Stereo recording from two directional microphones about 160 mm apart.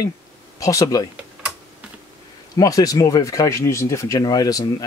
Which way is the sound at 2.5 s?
20° left (ahead or behind).